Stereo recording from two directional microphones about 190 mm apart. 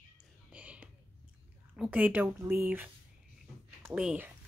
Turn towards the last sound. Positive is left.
turn(degrees=-5)  # may be behind; listen again after turning